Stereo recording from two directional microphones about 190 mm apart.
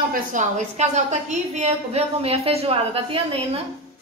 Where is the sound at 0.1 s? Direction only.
40° right (ahead or behind).